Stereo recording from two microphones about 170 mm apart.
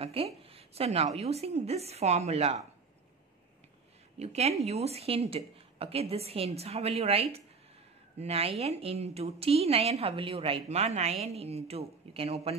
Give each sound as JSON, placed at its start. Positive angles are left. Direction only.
{"t": 0.0, "sound": "a sound", "side_deg": -35}
{"t": 0.4, "sound": "a woman's voice", "side_deg": -35}
{"t": 4.2, "sound": "a woman's voice", "side_deg": -40}